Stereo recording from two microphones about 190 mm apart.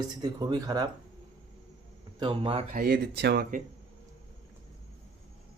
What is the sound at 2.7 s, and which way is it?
Speech, 50° right (ahead or behind).